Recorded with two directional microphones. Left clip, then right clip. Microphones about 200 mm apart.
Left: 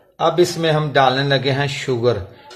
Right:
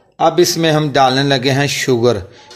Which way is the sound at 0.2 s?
40° right (ahead or behind).